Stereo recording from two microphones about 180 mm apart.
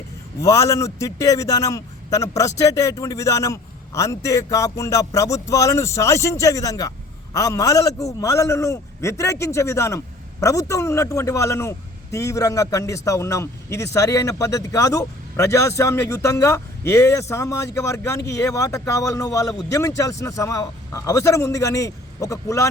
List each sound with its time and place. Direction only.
0.3 s a man's voice: 15° left (ahead or behind)